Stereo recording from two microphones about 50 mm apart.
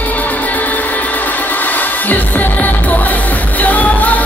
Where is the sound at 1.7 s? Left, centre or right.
Left.